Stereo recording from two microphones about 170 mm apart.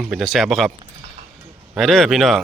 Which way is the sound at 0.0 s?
Centre (ahead or behind).